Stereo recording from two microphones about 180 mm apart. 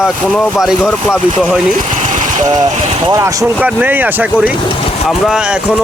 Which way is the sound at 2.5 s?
20° right (ahead or behind).